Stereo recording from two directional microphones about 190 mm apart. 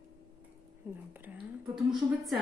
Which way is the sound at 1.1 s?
10° right (ahead or behind).